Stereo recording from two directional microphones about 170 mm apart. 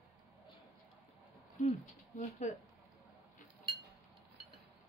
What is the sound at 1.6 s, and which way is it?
Speech, 45° left (ahead or behind).